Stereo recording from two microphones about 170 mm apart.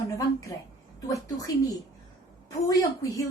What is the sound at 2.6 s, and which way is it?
Speech, 20° left (ahead or behind).